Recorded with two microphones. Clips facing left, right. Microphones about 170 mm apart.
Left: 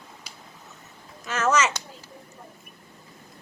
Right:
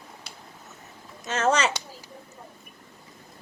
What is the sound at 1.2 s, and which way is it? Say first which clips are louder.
Speech: even; 25° right (ahead or behind).